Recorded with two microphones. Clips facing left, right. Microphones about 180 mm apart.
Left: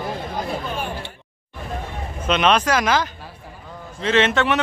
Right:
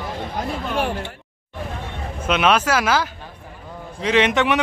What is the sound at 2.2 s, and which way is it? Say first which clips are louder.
A man's voice: even; 10° right (ahead or behind).